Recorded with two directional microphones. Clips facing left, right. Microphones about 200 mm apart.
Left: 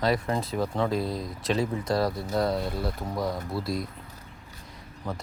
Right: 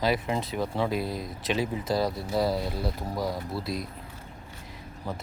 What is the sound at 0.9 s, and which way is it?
Speech, 25° left (ahead or behind).